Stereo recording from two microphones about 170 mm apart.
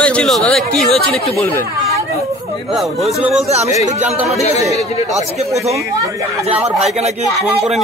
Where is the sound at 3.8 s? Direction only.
40° right (ahead or behind).